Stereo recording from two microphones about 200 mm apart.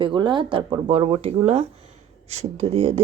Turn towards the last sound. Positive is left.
turn(degrees=-30)  # may be behind; listen again after turning